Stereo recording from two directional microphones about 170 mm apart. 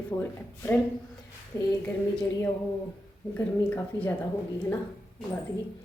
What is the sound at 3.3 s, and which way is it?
Speech, 10° left (ahead or behind).